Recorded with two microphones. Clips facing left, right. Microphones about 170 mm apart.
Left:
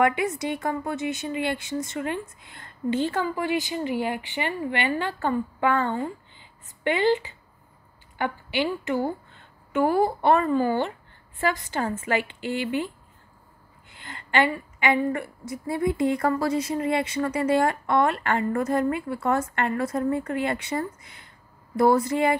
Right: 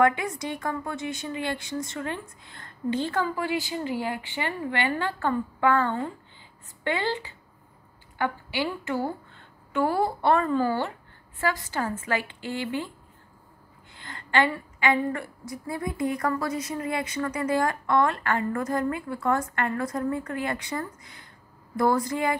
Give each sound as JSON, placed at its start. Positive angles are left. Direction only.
{"t": 0.0, "sound": "a woman's voice", "side_deg": 20}
{"t": 12.0, "sound": "a woman's voice", "side_deg": 20}
{"t": 13.9, "sound": "a woman's voice", "side_deg": 20}